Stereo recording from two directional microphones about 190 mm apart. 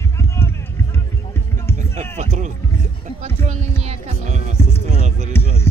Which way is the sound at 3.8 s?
35° right (ahead or behind).